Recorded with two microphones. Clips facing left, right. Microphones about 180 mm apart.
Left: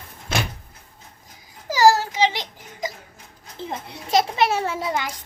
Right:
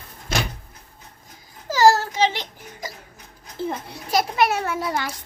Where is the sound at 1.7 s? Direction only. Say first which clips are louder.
Even; 15° left (ahead or behind).